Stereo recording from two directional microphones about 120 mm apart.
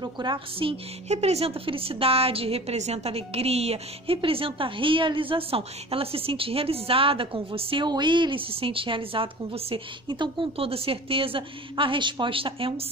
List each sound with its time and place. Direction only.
0.0 s a woman's voice: 40° right (ahead or behind)
1.1 s a woman's voice: 60° right (ahead or behind)